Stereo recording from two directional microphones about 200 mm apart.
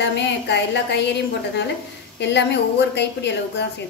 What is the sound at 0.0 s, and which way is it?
A woman's voice, 60° left (ahead or behind).